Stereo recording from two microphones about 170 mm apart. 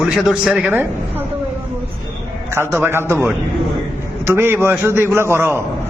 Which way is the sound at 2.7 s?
10° right (ahead or behind).